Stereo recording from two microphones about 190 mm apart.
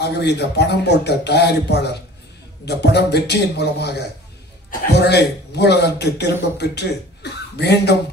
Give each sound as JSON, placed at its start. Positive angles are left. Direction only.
{"t": 0.0, "sound": "a man's voice", "side_deg": 60}